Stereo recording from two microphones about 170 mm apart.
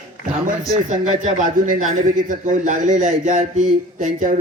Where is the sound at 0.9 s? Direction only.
50° right (ahead or behind).